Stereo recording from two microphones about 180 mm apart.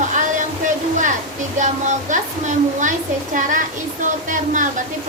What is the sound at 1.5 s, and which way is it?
A woman's voice, 45° right (ahead or behind).